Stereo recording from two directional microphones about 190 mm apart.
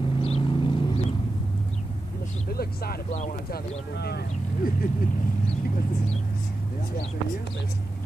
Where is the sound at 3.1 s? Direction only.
40° left (ahead or behind).